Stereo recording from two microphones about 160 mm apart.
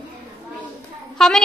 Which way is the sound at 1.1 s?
5° left (ahead or behind).